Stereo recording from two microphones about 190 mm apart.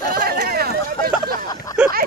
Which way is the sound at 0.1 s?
55° right (ahead or behind).